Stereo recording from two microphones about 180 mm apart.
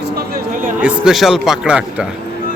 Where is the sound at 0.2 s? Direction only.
55° right (ahead or behind).